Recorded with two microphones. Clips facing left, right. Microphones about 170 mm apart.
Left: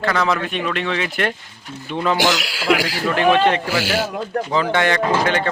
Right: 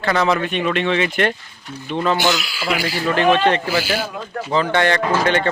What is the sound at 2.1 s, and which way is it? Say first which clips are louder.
Speech: even; 90° left.